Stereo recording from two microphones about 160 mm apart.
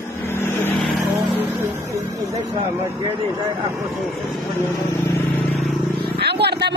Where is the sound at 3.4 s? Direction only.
30° right (ahead or behind).